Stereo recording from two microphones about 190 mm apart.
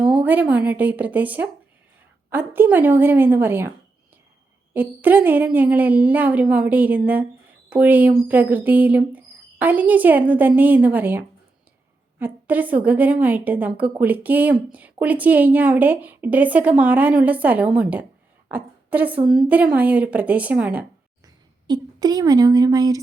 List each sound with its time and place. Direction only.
0.0 s speech: 5° right (ahead or behind)
4.7 s speech: 10° right (ahead or behind)
21.7 s a woman's voice: 20° right (ahead or behind)